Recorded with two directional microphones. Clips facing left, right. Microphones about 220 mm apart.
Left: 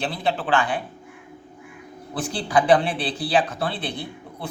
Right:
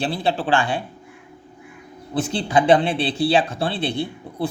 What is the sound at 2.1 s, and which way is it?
A man's voice, 25° right (ahead or behind).